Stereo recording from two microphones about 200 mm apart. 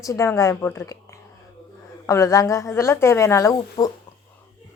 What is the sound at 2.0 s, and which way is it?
Speech, 15° left (ahead or behind).